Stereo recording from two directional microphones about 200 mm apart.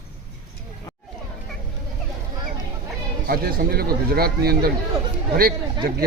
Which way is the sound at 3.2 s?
50° right (ahead or behind).